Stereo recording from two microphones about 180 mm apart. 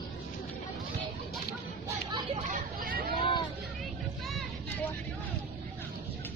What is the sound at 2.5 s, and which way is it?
Hubbub, 55° right (ahead or behind).